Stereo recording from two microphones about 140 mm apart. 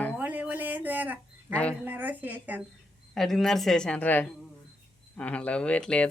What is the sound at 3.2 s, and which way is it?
A woman's voice, centre (ahead or behind).